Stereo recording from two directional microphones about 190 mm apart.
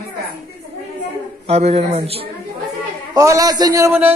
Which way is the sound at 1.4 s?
35° right (ahead or behind).